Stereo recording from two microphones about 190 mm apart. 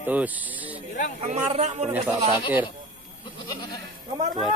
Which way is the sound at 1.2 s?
35° right (ahead or behind).